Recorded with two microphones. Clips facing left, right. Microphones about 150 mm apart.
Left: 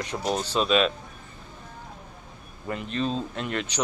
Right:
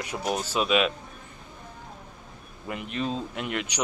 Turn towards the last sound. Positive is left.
turn(degrees=-10)  # may be behind; listen again after turning